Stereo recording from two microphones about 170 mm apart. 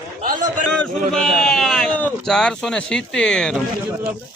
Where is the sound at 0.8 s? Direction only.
5° left (ahead or behind).